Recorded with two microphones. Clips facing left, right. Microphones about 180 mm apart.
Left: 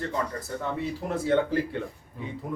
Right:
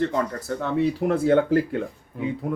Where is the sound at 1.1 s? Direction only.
55° right (ahead or behind).